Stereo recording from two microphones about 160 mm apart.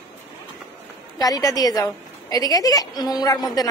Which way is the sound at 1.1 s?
25° left (ahead or behind).